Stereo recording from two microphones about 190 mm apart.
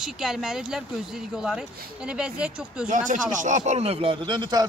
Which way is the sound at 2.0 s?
5° right (ahead or behind).